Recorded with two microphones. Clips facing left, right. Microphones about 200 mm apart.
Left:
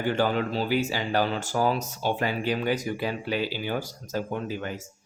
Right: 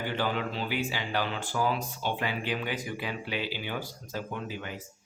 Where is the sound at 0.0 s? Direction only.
45° left (ahead or behind).